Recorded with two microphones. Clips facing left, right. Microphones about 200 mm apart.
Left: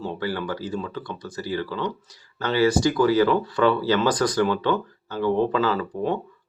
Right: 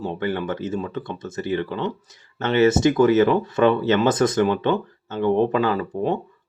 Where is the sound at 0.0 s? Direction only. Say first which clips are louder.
Right 3 dB; 20° right (ahead or behind).